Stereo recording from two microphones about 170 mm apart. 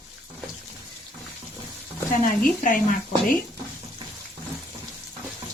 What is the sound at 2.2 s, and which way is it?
Speech, 50° left (ahead or behind).